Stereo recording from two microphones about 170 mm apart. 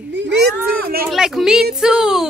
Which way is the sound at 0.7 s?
60° right (ahead or behind).